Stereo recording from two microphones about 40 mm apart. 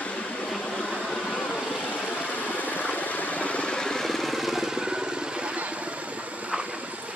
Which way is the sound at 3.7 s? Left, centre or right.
Centre.